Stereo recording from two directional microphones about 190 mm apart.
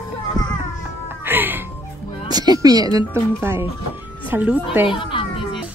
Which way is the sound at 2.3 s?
20° right (ahead or behind).